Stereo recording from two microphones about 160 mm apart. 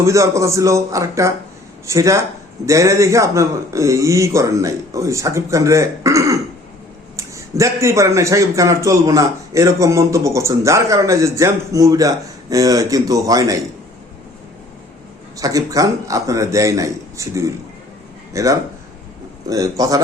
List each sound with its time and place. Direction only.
0.0 s a man's voice: 20° right (ahead or behind)
15.4 s a man's voice: 20° right (ahead or behind)